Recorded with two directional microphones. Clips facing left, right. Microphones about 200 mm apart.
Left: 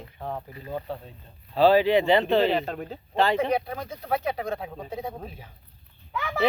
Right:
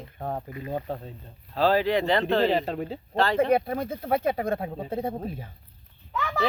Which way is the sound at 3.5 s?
50° right (ahead or behind).